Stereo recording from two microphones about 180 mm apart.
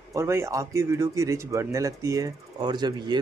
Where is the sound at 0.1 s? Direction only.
15° right (ahead or behind).